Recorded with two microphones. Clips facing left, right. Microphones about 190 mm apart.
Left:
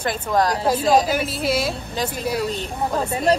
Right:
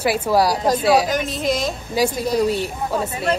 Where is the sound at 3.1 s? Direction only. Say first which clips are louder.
Left 3 dB; 35° left (ahead or behind).